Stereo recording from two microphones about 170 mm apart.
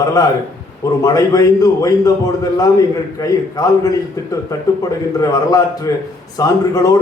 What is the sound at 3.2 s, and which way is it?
Speech, 20° left (ahead or behind).